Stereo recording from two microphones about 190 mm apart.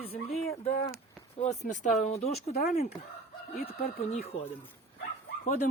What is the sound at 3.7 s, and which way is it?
Speech, 30° left (ahead or behind).